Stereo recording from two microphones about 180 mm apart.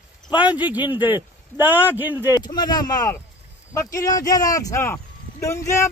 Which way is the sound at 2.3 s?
20° left (ahead or behind).